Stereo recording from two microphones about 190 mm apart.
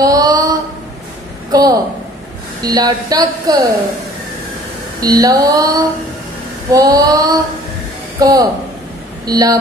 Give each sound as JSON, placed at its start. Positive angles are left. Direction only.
{"t": 0.0, "sound": "a sound", "side_deg": -20}
{"t": 2.6, "sound": "speech", "side_deg": -20}
{"t": 5.0, "sound": "speech", "side_deg": -20}